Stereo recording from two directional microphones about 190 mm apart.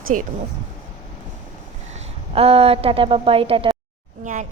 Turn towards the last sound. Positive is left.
turn(degrees=-40)  # may be behind; listen again after turning